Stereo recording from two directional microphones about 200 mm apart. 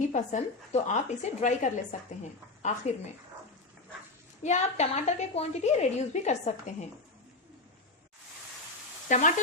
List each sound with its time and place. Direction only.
0.1 s a woman's voice: 35° left (ahead or behind)
4.4 s a woman's voice: 35° left (ahead or behind)
9.0 s speech: 40° left (ahead or behind)